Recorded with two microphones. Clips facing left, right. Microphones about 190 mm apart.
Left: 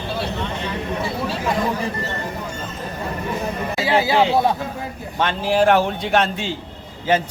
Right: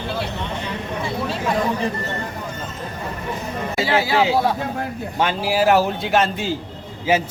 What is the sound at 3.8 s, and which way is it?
Speech, 20° left (ahead or behind).